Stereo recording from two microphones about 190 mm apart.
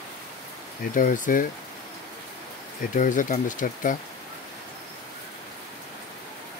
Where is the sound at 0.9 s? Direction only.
45° left (ahead or behind).